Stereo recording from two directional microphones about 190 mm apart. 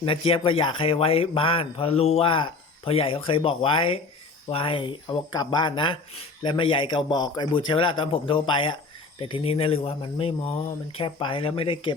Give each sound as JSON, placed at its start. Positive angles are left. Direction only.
{"t": 0.0, "sound": "speech", "side_deg": 30}